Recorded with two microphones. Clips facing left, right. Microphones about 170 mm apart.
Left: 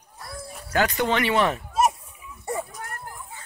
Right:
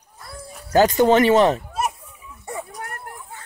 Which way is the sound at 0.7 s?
40° right (ahead or behind).